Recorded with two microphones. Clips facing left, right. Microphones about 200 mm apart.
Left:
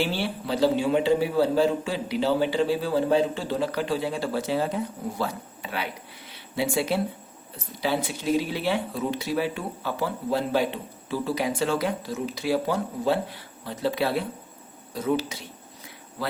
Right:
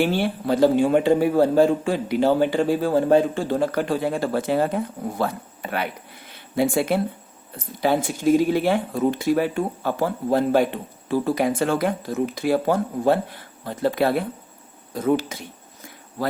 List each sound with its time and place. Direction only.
0.0 s speech: 50° right (ahead or behind)